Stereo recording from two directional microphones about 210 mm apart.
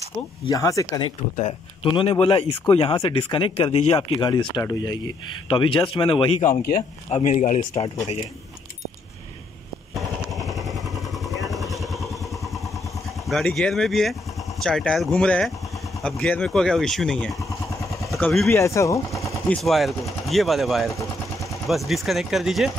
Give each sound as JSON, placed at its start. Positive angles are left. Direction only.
{"t": 0.5, "sound": "speech", "side_deg": 15}
{"t": 1.3, "sound": "speech", "side_deg": 30}
{"t": 9.9, "sound": "vehicle", "side_deg": 0}
{"t": 13.3, "sound": "speech", "side_deg": 0}
{"t": 19.2, "sound": "speech", "side_deg": 5}